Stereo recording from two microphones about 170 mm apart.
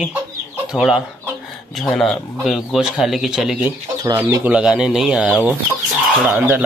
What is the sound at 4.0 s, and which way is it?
Speech, 20° right (ahead or behind).